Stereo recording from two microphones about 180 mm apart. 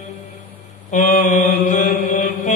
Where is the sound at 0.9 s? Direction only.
45° left (ahead or behind).